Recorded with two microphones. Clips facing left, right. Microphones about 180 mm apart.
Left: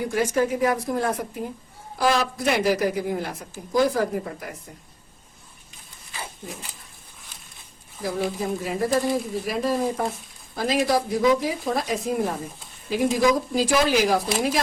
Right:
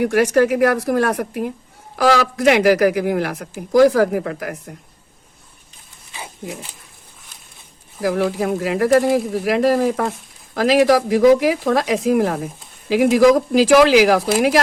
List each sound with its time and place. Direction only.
0.0 s a woman's voice: 75° right (ahead or behind)
2.0 s speech: 90° right; by 4.5 s 75° right (ahead or behind)
8.0 s speech: 90° right